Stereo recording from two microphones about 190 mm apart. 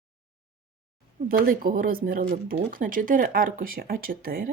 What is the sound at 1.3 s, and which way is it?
Speech, 50° right (ahead or behind).